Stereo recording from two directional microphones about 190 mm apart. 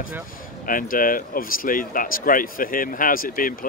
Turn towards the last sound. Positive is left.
turn(degrees=45)  # may be behind; listen again after turning